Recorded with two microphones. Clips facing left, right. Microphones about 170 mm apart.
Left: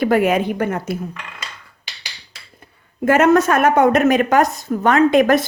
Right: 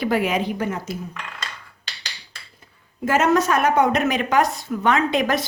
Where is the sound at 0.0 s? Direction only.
50° left (ahead or behind).